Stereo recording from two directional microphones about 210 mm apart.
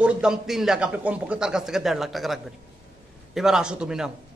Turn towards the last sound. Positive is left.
turn(degrees=-5)  # may be behind; listen again after turning